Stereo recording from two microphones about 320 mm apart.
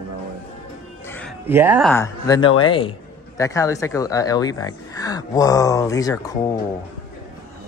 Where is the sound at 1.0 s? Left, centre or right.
Centre.